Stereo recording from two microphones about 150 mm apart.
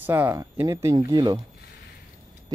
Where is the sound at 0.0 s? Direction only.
15° right (ahead or behind).